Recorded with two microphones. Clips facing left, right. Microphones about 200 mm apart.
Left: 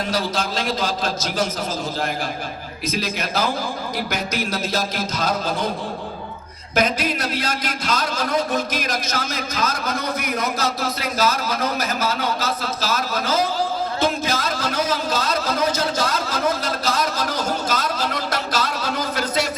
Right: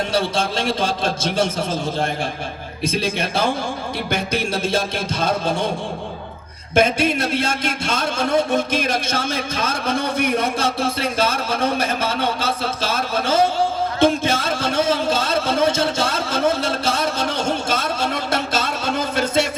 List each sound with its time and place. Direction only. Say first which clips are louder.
0.1 s a man's voice: right 3 dB; 30° right (ahead or behind)
2.8 s a man's voice: right 4 dB; 30° right (ahead or behind)
7.3 s a man's voice: right 4 dB; 25° right (ahead or behind)
14.0 s a sound: right 6 dB; 30° right (ahead or behind)